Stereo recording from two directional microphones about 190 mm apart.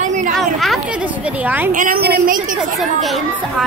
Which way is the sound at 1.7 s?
50° right (ahead or behind).